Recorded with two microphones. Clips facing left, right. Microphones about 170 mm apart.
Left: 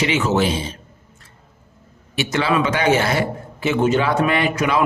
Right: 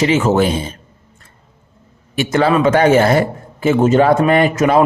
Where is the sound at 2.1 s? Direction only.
45° right (ahead or behind).